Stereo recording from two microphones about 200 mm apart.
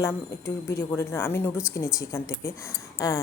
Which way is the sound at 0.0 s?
15° left (ahead or behind).